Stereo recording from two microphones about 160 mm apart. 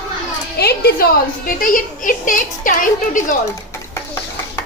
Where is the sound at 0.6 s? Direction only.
75° left (ahead or behind).